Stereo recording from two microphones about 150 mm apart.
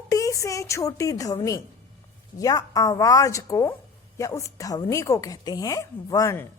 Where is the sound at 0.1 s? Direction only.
20° left (ahead or behind).